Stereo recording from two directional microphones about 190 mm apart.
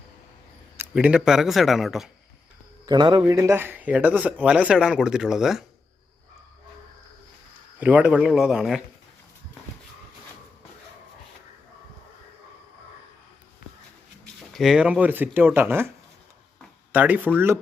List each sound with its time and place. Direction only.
0.8 s speech: 5° right (ahead or behind)
2.8 s a man's voice: 20° right (ahead or behind); by 5.6 s centre (ahead or behind)
7.8 s speech: 10° right (ahead or behind)
14.5 s speech: centre (ahead or behind)
16.9 s speech: 10° right (ahead or behind)